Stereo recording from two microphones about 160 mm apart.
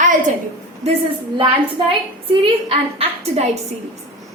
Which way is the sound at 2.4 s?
40° right (ahead or behind).